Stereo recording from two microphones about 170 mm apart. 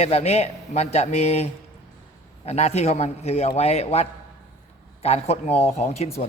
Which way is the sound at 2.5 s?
40° left (ahead or behind).